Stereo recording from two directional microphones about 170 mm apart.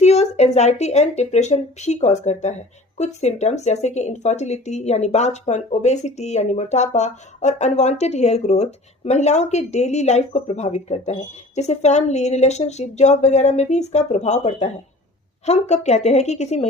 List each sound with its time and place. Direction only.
0.0 s speech: 40° left (ahead or behind)